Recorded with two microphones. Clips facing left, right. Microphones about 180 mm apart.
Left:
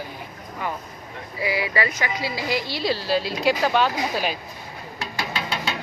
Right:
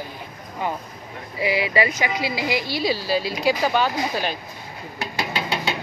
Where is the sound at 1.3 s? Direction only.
20° right (ahead or behind); by 4.3 s centre (ahead or behind).